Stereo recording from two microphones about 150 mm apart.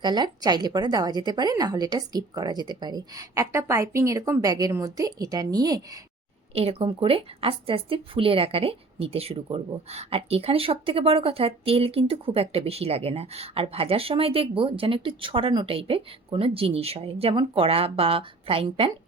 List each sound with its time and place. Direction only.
0.0 s a woman's voice: 30° right (ahead or behind)
6.5 s speech: 40° right (ahead or behind)